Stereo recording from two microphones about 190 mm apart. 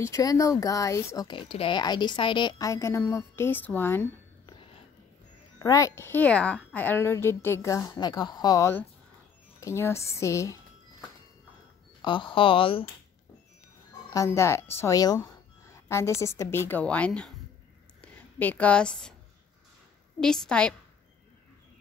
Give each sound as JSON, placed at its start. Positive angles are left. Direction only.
{"t": 0.0, "sound": "speech", "side_deg": 15}
{"t": 5.6, "sound": "speech", "side_deg": 15}
{"t": 12.0, "sound": "speech", "side_deg": 25}
{"t": 14.1, "sound": "a woman's voice", "side_deg": 15}
{"t": 20.2, "sound": "a woman's voice", "side_deg": 5}